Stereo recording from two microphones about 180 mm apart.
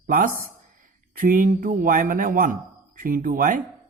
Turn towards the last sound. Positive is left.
turn(degrees=-50)  # may be behind; listen again after turning